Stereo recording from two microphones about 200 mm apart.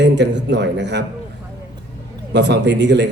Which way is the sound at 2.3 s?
60° right (ahead or behind).